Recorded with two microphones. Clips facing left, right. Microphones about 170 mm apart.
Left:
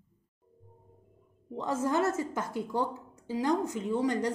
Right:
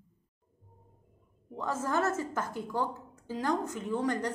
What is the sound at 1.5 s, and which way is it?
A woman's voice, 20° left (ahead or behind).